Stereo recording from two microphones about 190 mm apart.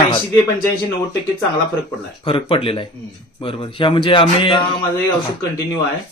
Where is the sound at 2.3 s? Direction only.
30° left (ahead or behind).